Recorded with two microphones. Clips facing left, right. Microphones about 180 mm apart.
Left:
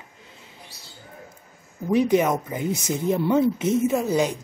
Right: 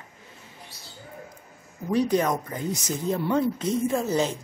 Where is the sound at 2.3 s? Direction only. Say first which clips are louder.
Left 3 dB; 20° left (ahead or behind).